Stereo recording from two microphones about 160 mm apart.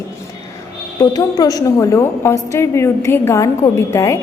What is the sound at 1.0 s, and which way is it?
A woman's voice, 20° left (ahead or behind).